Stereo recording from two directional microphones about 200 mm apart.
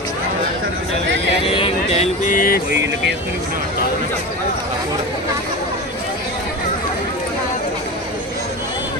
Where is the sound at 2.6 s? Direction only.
60° right (ahead or behind).